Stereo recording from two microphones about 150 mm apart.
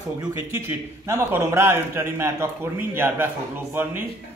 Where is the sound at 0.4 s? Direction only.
15° right (ahead or behind).